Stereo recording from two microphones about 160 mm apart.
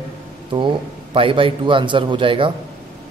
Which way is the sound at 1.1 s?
35° right (ahead or behind).